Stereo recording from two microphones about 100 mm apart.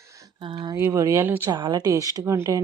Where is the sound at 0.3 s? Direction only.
55° right (ahead or behind).